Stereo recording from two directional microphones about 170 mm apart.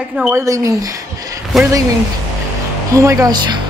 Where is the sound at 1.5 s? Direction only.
Centre (ahead or behind).